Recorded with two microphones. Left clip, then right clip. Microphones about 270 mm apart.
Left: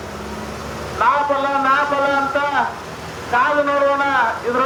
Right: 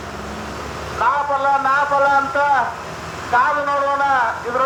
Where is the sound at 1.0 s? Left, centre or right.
Right.